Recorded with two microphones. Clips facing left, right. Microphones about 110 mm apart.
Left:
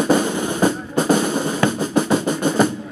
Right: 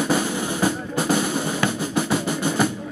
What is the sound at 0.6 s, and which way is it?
Drum, 20° left (ahead or behind).